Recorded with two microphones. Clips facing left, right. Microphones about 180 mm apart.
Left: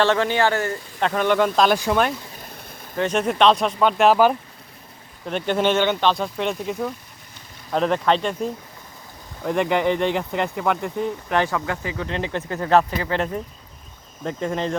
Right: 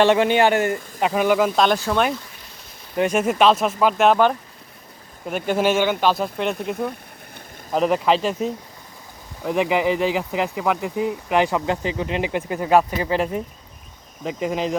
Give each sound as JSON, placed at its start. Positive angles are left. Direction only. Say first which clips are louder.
{"t": 0.0, "sound": "speech", "louder": "right 3 dB", "side_deg": -15}
{"t": 0.9, "sound": "speech", "louder": "right 1 dB", "side_deg": -10}
{"t": 2.9, "sound": "speech", "louder": "right 2 dB", "side_deg": -10}
{"t": 5.2, "sound": "speech", "louder": "right 1 dB", "side_deg": -10}